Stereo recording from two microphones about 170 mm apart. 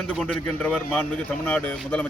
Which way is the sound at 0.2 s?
5° left (ahead or behind).